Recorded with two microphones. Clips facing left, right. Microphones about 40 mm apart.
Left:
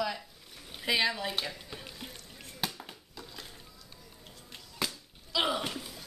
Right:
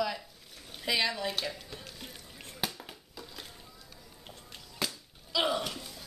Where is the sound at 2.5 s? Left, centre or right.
Centre.